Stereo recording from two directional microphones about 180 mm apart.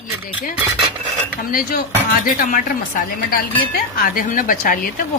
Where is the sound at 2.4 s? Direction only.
50° left (ahead or behind).